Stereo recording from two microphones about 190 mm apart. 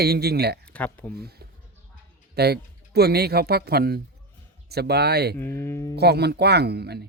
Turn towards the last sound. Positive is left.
turn(degrees=-60)  # may be behind; listen again after turning